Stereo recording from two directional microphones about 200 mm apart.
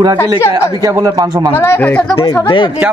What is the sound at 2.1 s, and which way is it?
Speech, 20° left (ahead or behind).